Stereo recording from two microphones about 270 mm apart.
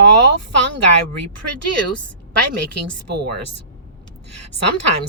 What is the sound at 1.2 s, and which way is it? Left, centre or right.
Speech, right.